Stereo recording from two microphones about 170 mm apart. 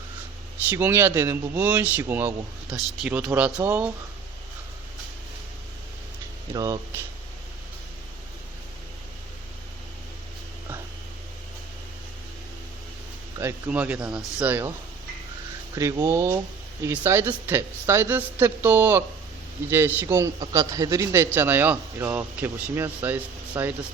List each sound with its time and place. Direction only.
0.7 s a man's voice: 15° right (ahead or behind)
6.5 s speech: 20° right (ahead or behind)
13.4 s a man's voice: 10° right (ahead or behind)
15.7 s a man's voice: 20° right (ahead or behind)